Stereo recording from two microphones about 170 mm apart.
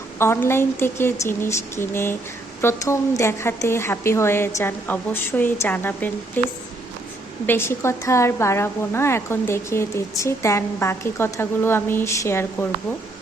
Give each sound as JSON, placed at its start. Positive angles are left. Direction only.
{"t": 0.2, "sound": "a woman's voice", "side_deg": 15}
{"t": 7.4, "sound": "a woman's voice", "side_deg": 15}